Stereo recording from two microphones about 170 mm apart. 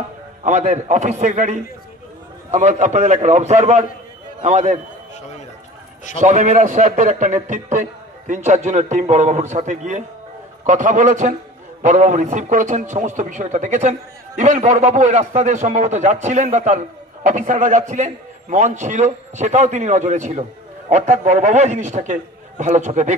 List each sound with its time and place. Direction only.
0.4 s a man's voice: 45° right (ahead or behind)
6.1 s a man's voice: 45° right (ahead or behind)